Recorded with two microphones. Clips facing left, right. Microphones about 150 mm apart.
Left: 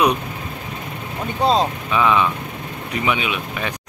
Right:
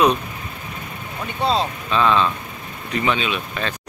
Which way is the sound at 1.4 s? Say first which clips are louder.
Left 3 dB; 40° left (ahead or behind).